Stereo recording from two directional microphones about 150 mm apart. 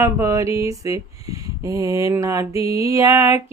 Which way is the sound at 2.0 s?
20° right (ahead or behind).